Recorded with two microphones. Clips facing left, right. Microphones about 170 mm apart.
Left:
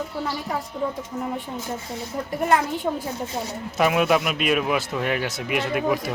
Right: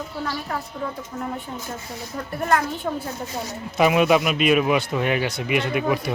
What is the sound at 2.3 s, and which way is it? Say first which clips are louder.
Speech: left 1 dB; 15° left (ahead or behind).